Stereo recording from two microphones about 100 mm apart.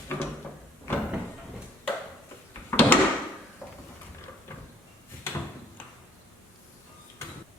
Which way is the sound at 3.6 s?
30° left (ahead or behind).